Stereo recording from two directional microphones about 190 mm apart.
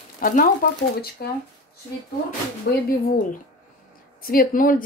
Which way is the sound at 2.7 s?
55° left (ahead or behind).